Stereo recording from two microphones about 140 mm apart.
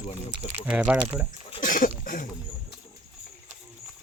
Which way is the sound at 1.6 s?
70° left (ahead or behind).